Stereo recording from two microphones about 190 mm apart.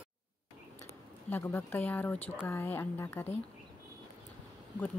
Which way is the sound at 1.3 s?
10° left (ahead or behind).